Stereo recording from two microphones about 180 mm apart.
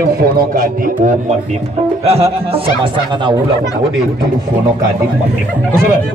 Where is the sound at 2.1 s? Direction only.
30° right (ahead or behind).